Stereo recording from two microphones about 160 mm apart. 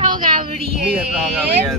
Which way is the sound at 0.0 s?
30° right (ahead or behind).